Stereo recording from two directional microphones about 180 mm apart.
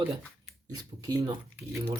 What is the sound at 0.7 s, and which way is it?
Speech, 20° right (ahead or behind).